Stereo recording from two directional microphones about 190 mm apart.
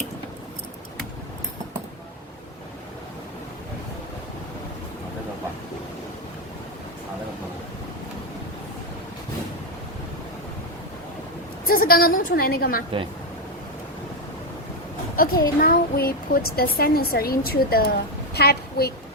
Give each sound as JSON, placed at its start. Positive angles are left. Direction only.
{"t": 11.6, "sound": "speech", "side_deg": 50}
{"t": 15.1, "sound": "a woman's voice", "side_deg": 50}